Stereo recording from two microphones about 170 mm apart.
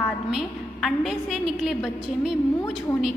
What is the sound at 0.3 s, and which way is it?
A woman's voice, centre (ahead or behind).